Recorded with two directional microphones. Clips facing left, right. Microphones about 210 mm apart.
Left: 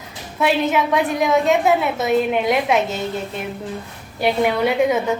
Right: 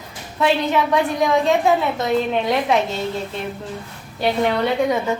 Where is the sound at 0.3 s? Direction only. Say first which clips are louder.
Even; 5° left (ahead or behind).